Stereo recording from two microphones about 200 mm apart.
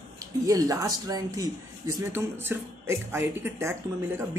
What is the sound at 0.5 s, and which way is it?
Speech, 15° right (ahead or behind).